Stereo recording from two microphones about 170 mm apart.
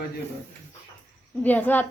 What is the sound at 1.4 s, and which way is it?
Speech, 10° left (ahead or behind).